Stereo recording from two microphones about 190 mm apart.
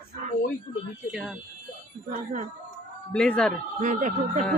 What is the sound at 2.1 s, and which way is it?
Speech, 40° right (ahead or behind).